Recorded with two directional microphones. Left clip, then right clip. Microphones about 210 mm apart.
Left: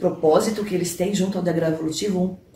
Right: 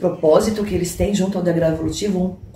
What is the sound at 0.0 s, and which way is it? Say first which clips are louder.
Speech: right 3 dB; 5° right (ahead or behind).